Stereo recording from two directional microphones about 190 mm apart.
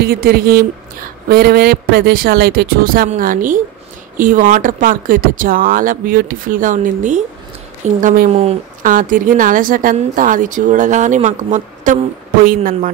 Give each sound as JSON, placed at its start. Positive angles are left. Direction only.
{"t": 0.0, "sound": "a woman's voice", "side_deg": -55}